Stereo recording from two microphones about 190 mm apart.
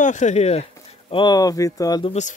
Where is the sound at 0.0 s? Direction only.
40° left (ahead or behind).